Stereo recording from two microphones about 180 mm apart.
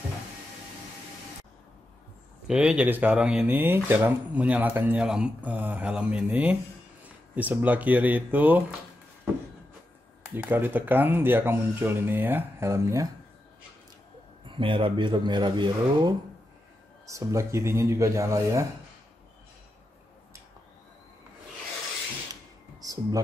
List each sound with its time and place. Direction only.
2.4 s speech: 5° right (ahead or behind)
10.3 s speech: 10° right (ahead or behind)
14.4 s speech: 25° right (ahead or behind)
22.3 s a sound: 20° right (ahead or behind)